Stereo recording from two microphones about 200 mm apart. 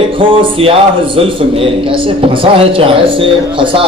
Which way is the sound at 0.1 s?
25° right (ahead or behind).